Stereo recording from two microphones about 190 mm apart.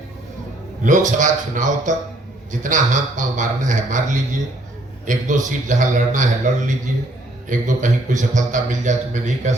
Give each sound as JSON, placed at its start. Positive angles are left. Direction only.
{"t": 0.9, "sound": "a man's voice", "side_deg": -40}
{"t": 5.0, "sound": "a man's voice", "side_deg": -40}